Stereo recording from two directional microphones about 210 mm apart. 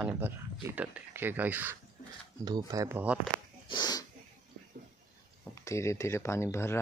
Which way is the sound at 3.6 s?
20° left (ahead or behind).